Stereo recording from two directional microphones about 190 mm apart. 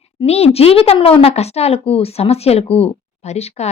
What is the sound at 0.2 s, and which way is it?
Speech, 30° left (ahead or behind).